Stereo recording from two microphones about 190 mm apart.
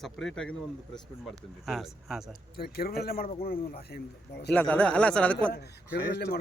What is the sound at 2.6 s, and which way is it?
Speech, 55° left (ahead or behind).